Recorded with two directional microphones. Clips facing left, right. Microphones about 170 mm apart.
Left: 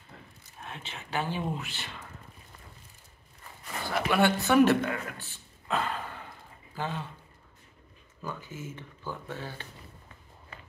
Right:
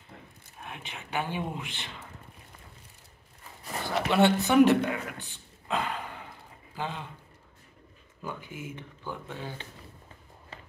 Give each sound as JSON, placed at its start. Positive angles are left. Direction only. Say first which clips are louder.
{"t": 0.6, "sound": "speech", "louder": "even", "side_deg": -15}
{"t": 3.6, "sound": "a sound", "louder": "right 1 dB", "side_deg": -25}
{"t": 6.7, "sound": "speech", "louder": "left 1 dB", "side_deg": -15}
{"t": 8.2, "sound": "speech", "louder": "even", "side_deg": -15}